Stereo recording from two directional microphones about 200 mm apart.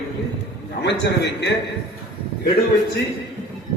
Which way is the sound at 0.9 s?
60° left (ahead or behind).